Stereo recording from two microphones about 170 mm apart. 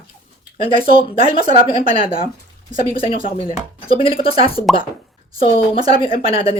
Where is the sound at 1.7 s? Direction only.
30° left (ahead or behind).